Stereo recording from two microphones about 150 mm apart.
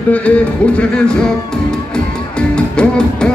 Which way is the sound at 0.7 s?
5° left (ahead or behind).